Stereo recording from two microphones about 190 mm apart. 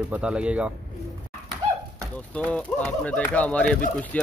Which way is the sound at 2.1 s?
5° left (ahead or behind).